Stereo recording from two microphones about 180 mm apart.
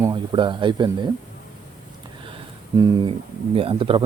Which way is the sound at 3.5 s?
30° right (ahead or behind).